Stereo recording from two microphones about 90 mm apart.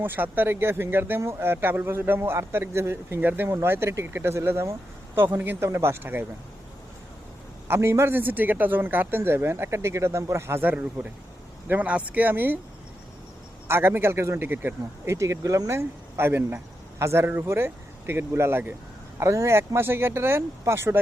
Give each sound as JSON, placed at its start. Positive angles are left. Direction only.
{"t": 0.0, "sound": "a man's voice", "side_deg": -20}
{"t": 7.7, "sound": "a man's voice", "side_deg": -30}
{"t": 13.7, "sound": "a man's voice", "side_deg": -25}